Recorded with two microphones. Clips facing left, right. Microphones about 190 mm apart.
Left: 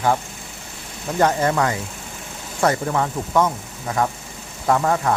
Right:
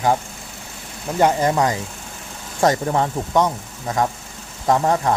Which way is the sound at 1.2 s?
15° right (ahead or behind).